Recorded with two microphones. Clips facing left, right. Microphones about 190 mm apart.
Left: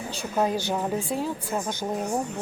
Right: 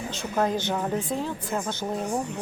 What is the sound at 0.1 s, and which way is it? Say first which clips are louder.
A woman's voice: left 1 dB; 10° left (ahead or behind).